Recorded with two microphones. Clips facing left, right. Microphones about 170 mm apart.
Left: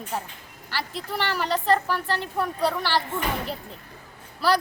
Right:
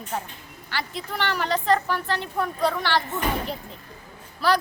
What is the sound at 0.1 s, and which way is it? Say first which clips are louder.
A woman's voice: right 1 dB; 10° left (ahead or behind).